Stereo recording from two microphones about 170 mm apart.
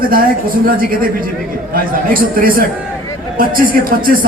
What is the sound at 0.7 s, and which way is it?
A man's voice, 55° right (ahead or behind).